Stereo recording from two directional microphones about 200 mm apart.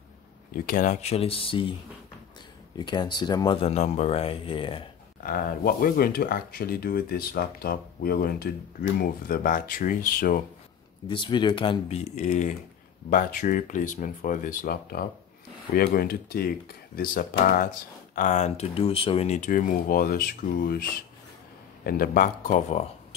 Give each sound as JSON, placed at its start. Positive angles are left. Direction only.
{"t": 0.7, "sound": "speech", "side_deg": 40}
{"t": 2.8, "sound": "speech", "side_deg": 20}
{"t": 5.2, "sound": "speech", "side_deg": 45}
{"t": 11.1, "sound": "speech", "side_deg": 25}
{"t": 21.8, "sound": "speech", "side_deg": 45}